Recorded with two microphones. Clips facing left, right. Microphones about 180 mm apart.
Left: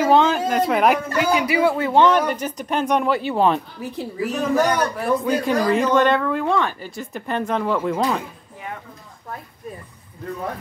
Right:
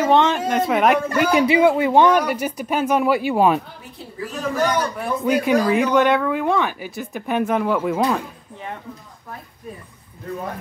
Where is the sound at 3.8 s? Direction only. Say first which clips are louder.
Left 7 dB; 85° left.